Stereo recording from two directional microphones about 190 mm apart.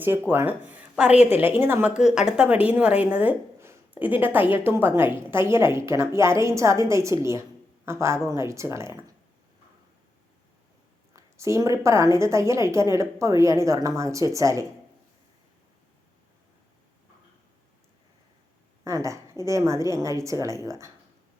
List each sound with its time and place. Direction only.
0.0 s a woman's voice: 10° right (ahead or behind)
11.1 s a woman's voice: 15° right (ahead or behind)
18.9 s a woman's voice: 15° right (ahead or behind)